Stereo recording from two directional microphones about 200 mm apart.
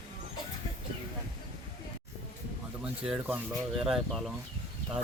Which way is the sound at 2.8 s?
5° right (ahead or behind).